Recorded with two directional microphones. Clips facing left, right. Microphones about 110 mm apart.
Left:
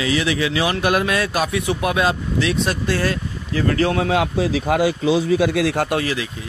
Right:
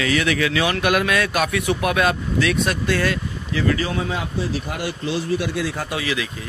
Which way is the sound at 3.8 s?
65° left (ahead or behind).